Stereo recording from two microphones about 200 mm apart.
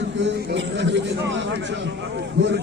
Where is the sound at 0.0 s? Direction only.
60° right (ahead or behind).